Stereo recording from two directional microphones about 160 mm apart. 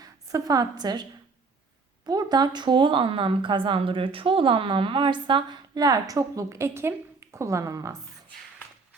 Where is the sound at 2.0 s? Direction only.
25° right (ahead or behind).